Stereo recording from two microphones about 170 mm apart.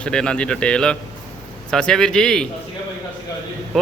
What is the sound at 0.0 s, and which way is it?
A man's voice, 5° left (ahead or behind).